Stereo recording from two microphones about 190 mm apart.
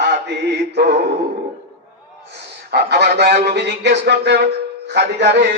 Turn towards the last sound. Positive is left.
turn(degrees=-65)  # may be behind; listen again after turning